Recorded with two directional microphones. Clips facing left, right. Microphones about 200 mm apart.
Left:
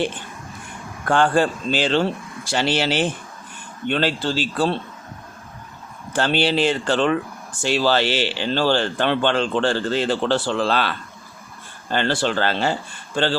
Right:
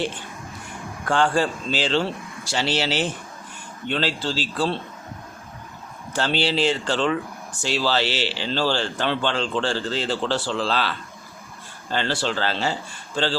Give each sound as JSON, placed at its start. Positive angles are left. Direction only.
{"t": 1.0, "sound": "speech", "side_deg": 55}
{"t": 6.1, "sound": "speech", "side_deg": 55}